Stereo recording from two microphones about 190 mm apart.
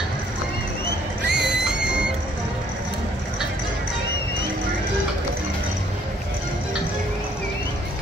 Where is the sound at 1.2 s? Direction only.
65° right (ahead or behind).